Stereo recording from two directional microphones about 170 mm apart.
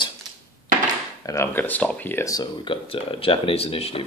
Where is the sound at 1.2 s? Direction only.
15° left (ahead or behind).